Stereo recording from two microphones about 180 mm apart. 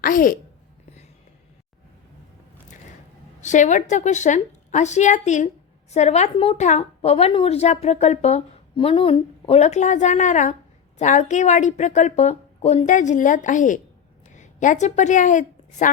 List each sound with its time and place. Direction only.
0.0 s speech: 50° left (ahead or behind)
3.4 s a woman's voice: 40° left (ahead or behind)